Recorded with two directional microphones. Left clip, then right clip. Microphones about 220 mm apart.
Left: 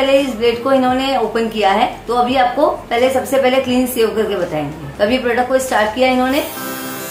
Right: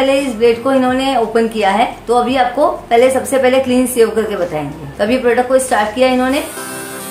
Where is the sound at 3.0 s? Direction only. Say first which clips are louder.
Even; 35° right (ahead or behind).